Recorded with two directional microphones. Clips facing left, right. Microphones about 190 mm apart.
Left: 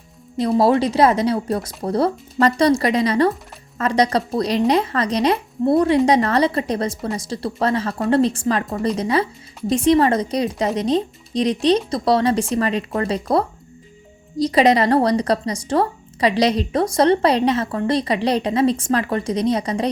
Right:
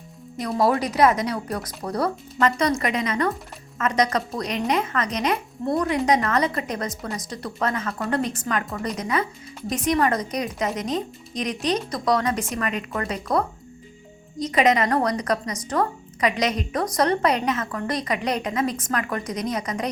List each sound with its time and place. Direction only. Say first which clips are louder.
0.3 s a woman's voice: left 6 dB; 30° left (ahead or behind)